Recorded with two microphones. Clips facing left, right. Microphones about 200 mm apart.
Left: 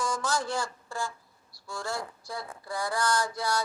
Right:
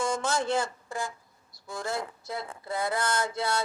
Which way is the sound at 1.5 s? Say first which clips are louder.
Right 2 dB; 20° right (ahead or behind).